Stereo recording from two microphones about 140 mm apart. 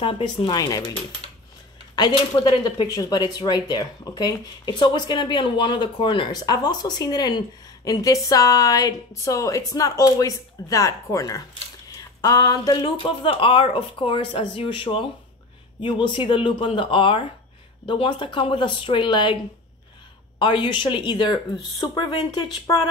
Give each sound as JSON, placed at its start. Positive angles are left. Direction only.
{"t": 0.0, "sound": "speech", "side_deg": 35}
{"t": 2.0, "sound": "speech", "side_deg": 30}
{"t": 20.3, "sound": "speech", "side_deg": 35}